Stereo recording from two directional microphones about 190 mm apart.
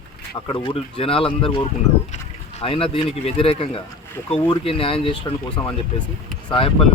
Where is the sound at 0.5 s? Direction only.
25° left (ahead or behind).